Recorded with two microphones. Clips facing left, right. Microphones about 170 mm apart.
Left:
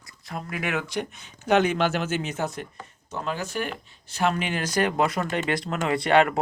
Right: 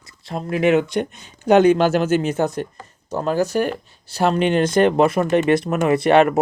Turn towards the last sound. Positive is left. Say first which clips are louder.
# right 6 dB
turn(degrees=-20)  # may be behind; listen again after turning